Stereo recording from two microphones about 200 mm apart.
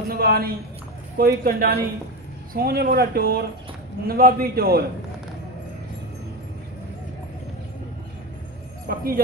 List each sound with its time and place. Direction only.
0.1 s speech: 50° right (ahead or behind)
8.8 s speech: 45° right (ahead or behind)